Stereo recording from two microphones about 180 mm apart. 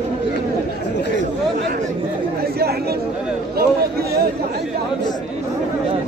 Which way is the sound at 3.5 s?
60° right (ahead or behind).